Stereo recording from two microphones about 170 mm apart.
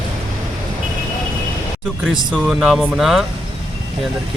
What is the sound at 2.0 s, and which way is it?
Speech, 5° right (ahead or behind).